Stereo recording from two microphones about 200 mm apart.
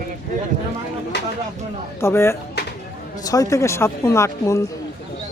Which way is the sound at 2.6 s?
55° left (ahead or behind).